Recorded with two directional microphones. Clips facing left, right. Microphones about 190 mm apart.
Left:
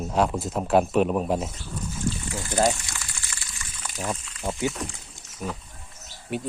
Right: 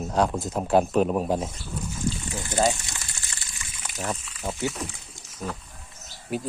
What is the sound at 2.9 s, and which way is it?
Water, 25° right (ahead or behind).